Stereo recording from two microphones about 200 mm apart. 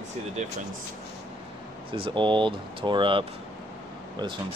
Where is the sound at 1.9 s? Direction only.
25° right (ahead or behind).